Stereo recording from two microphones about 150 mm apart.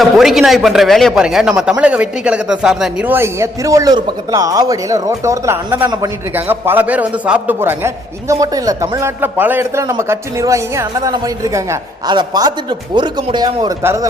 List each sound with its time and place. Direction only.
0.0 s a man's voice: centre (ahead or behind); by 14.1 s 20° right (ahead or behind)